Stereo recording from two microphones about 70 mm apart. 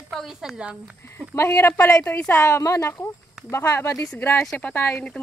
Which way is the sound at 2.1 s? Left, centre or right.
Left.